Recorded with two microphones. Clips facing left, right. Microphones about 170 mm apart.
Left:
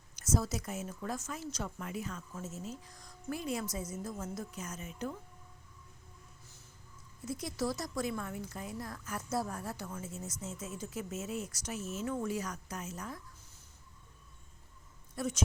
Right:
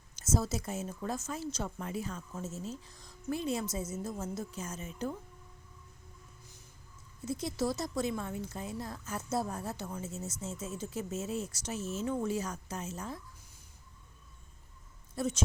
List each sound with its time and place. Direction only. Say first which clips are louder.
0.2 s speech: right 1 dB; 25° right (ahead or behind)
7.3 s speech: right 2 dB; 25° right (ahead or behind)
15.1 s speech: right 2 dB; 25° right (ahead or behind)